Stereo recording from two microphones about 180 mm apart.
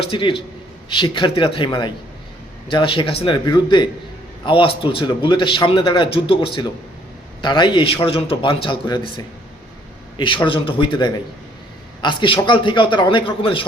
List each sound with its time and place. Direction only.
0.0 s a man's voice: 30° left (ahead or behind)